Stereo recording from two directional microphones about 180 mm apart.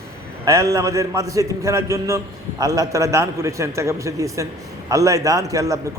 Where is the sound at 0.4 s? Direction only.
20° right (ahead or behind).